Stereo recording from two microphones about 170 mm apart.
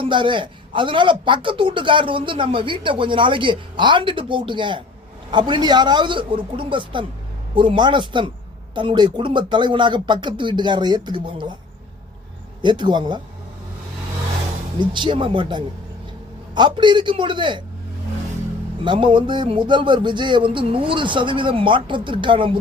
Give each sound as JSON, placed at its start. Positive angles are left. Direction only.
{"t": 0.0, "sound": "a man's voice", "side_deg": -30}
{"t": 12.6, "sound": "a man's voice", "side_deg": -25}
{"t": 14.8, "sound": "a man's voice", "side_deg": -30}
{"t": 18.9, "sound": "a man's voice", "side_deg": -30}